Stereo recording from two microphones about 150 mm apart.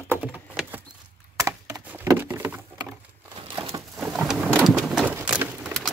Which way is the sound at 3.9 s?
5° right (ahead or behind).